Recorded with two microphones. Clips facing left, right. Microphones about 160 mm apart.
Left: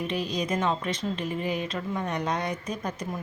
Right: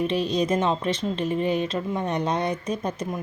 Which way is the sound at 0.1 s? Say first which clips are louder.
Right 6 dB; 30° right (ahead or behind).